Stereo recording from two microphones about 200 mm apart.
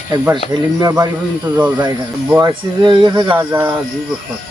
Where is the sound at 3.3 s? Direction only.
10° right (ahead or behind).